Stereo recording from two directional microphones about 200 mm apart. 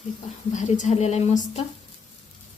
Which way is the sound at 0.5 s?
35° left (ahead or behind).